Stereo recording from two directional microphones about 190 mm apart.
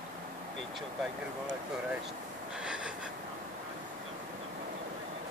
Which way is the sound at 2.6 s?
5° right (ahead or behind).